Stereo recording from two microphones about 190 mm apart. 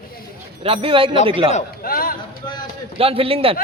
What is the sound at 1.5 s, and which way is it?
Speech, 45° left (ahead or behind).